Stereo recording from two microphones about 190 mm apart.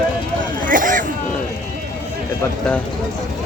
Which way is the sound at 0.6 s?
45° right (ahead or behind).